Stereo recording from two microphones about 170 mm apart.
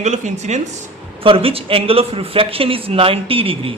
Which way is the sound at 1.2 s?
35° right (ahead or behind).